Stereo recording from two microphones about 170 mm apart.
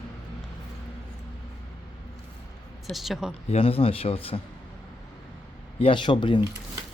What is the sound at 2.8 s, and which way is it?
Speech, centre (ahead or behind).